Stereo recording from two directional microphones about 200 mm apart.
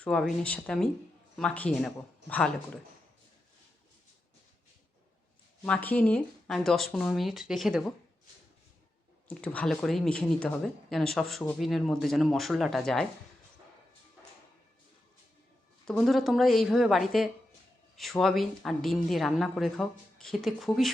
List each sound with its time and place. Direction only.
0.0 s speech: 5° left (ahead or behind)
2.2 s speech: 60° right (ahead or behind)
5.6 s speech: 5° left (ahead or behind)
9.3 s speech: 5° left (ahead or behind)
15.9 s speech: centre (ahead or behind)